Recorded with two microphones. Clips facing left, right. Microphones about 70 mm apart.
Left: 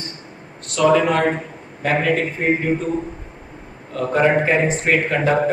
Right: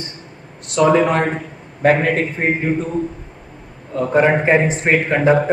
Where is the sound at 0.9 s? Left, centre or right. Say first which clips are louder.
Right 1 dB; right.